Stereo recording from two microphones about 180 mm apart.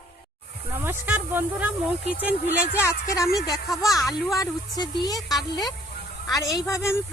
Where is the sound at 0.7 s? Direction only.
15° right (ahead or behind).